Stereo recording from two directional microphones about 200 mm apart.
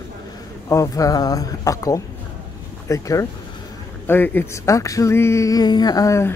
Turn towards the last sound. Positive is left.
turn(degrees=15)  # may be behind; listen again after turning